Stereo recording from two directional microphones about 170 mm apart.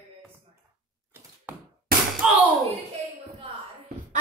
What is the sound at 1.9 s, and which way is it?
Slam, 60° right (ahead or behind).